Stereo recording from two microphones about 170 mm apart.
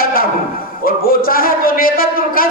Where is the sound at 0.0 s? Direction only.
60° left (ahead or behind).